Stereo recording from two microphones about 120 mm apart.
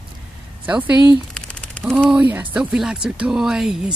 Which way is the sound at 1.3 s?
5° left (ahead or behind).